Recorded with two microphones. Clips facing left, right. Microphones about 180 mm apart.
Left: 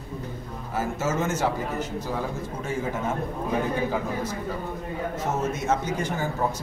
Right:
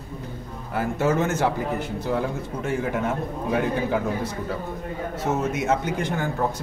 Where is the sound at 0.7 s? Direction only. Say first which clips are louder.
Right 4 dB; 60° right (ahead or behind).